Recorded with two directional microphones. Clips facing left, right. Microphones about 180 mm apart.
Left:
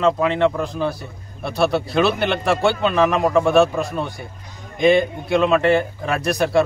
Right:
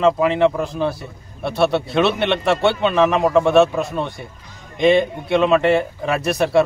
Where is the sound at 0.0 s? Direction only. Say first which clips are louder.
Right 2 dB; 5° right (ahead or behind).